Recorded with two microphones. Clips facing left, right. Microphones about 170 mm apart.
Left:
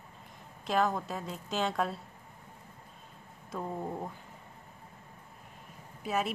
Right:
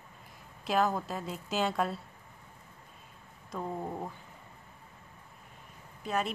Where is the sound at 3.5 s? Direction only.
Centre (ahead or behind).